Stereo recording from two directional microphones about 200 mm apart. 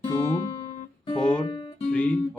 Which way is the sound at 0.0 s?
15° left (ahead or behind).